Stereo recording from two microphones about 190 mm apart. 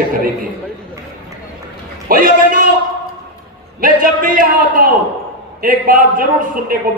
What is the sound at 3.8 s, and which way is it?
A man's voice, 45° right (ahead or behind).